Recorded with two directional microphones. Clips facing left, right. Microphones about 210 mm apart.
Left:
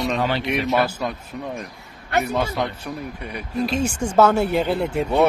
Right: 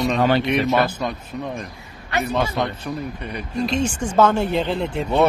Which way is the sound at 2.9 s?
10° left (ahead or behind).